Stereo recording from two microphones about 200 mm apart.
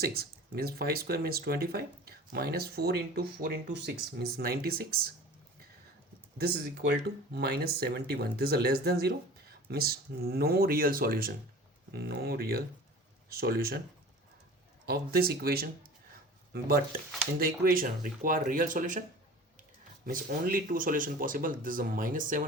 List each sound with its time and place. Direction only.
0.0 s speech: 50° right (ahead or behind)
7.3 s speech: 50° right (ahead or behind)
14.8 s speech: 50° right (ahead or behind)
20.1 s speech: 45° right (ahead or behind)